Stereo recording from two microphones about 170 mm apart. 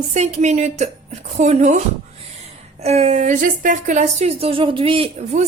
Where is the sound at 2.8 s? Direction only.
40° right (ahead or behind).